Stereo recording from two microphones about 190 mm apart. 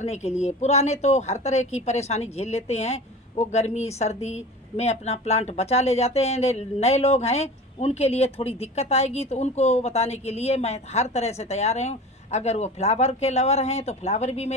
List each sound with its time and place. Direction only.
0.0 s a woman's voice: 35° left (ahead or behind)